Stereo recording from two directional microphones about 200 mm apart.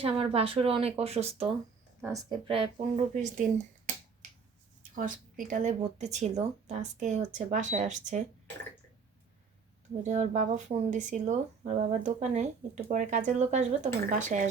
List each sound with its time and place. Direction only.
0.0 s speech: 25° right (ahead or behind)
2.0 s speech: 20° right (ahead or behind); by 3.4 s 35° right (ahead or behind)
4.8 s a sound: 45° right (ahead or behind)
5.5 s speech: 35° right (ahead or behind)
10.0 s speech: 35° right (ahead or behind)